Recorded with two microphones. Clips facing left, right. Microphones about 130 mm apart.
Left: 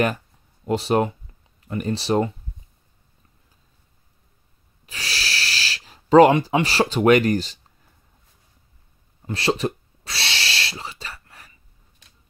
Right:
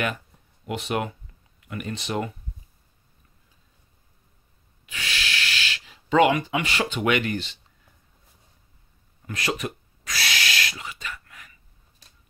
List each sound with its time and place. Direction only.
0.7 s speech: 35° left (ahead or behind)
4.8 s speech: 35° left (ahead or behind)
9.2 s owl: 30° left (ahead or behind)